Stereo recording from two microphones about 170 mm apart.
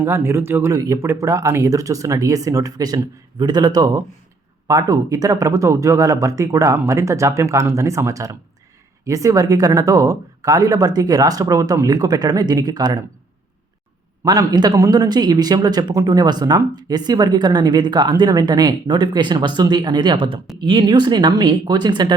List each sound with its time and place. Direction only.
0.0 s speech: 15° right (ahead or behind)
14.3 s speech: 25° right (ahead or behind)